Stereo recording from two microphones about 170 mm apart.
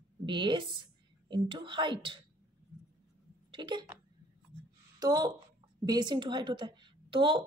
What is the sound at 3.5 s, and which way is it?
Speech, 25° right (ahead or behind).